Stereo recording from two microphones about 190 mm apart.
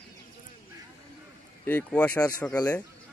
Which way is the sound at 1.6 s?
10° left (ahead or behind).